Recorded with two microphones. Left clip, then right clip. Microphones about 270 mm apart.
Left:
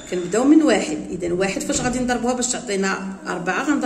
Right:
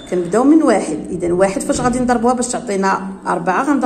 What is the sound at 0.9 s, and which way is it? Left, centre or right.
A woman's voice, centre.